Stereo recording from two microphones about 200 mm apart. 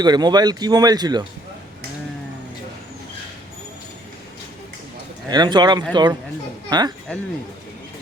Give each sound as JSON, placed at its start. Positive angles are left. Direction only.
{"t": 0.0, "sound": "speech", "side_deg": -20}
{"t": 5.3, "sound": "speech", "side_deg": -20}